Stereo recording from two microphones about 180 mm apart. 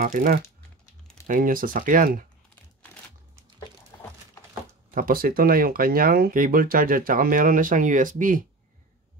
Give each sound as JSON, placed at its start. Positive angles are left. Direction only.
{"t": 0.0, "sound": "speech", "side_deg": -50}
{"t": 4.9, "sound": "speech", "side_deg": -55}